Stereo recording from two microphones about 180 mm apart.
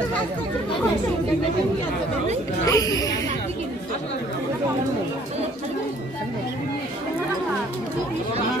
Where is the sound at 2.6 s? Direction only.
20° left (ahead or behind).